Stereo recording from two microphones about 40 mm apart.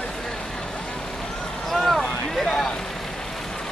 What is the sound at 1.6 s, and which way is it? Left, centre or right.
Vehicle, centre.